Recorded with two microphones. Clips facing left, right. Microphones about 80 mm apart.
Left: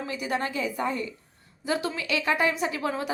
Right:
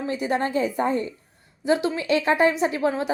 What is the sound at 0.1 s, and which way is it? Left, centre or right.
A woman's voice, right.